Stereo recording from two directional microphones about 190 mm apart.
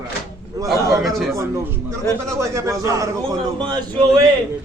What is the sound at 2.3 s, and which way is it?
Speech, 15° right (ahead or behind).